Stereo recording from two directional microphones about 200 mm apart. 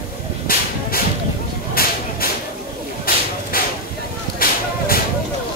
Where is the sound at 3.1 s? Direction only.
45° left (ahead or behind).